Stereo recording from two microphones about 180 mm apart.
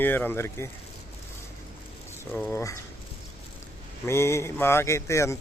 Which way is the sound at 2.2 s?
10° left (ahead or behind).